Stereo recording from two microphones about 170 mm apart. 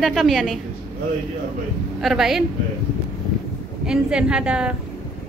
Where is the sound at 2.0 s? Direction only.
Centre (ahead or behind).